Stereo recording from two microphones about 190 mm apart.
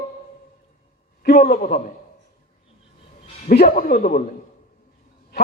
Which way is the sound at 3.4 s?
45° left (ahead or behind).